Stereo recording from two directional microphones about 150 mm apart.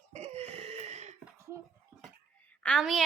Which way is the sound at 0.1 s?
45° right (ahead or behind).